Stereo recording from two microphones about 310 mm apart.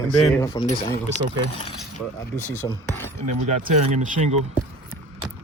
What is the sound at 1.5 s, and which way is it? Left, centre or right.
Keys jangling, centre.